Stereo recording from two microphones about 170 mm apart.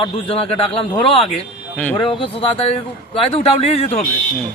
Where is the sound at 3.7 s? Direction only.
35° left (ahead or behind).